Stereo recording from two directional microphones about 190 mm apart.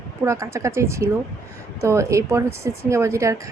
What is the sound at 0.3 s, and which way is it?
A woman's voice, 15° right (ahead or behind).